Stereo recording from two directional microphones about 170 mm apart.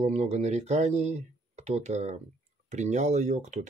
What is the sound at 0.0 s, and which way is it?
Speech, 40° right (ahead or behind).